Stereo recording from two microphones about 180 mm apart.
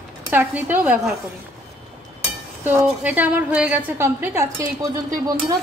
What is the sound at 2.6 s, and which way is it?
A woman's voice, 10° right (ahead or behind).